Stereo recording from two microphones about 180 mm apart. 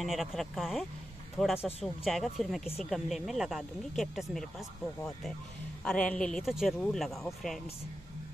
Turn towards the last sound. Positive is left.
turn(degrees=0)  # may be behind; listen again after turning